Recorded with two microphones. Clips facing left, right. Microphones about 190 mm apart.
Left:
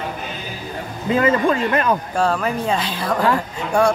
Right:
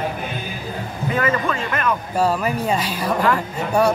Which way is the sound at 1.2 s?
30° left (ahead or behind).